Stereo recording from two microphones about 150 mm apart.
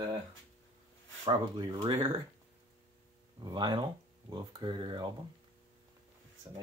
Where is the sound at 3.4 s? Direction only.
30° right (ahead or behind).